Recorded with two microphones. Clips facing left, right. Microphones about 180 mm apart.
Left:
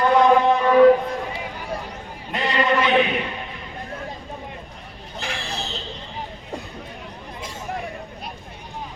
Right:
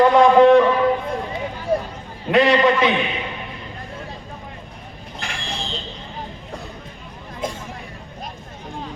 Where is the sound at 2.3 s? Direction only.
75° right (ahead or behind).